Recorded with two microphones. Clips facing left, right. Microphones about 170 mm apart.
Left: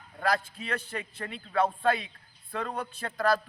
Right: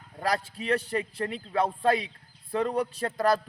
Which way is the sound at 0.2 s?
35° right (ahead or behind).